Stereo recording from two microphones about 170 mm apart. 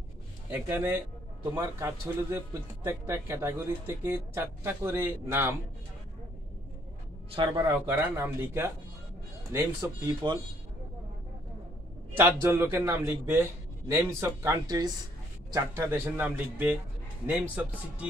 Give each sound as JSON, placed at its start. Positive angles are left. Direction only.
{"t": 0.5, "sound": "speech", "side_deg": -10}
{"t": 7.3, "sound": "speech", "side_deg": -20}
{"t": 10.2, "sound": "speech", "side_deg": -25}
{"t": 12.1, "sound": "speech", "side_deg": -15}